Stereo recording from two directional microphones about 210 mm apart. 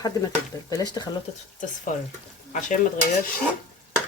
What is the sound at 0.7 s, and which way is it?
Speech, 20° left (ahead or behind).